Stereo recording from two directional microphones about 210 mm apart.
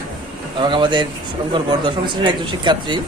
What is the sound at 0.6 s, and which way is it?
A man's voice, 20° right (ahead or behind).